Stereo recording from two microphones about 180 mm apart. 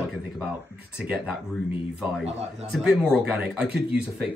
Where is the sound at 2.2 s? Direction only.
35° right (ahead or behind).